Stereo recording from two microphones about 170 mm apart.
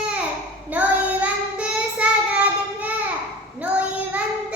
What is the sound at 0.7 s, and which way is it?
Child singing, 10° right (ahead or behind).